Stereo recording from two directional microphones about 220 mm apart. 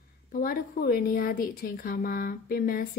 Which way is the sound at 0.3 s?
40° left (ahead or behind).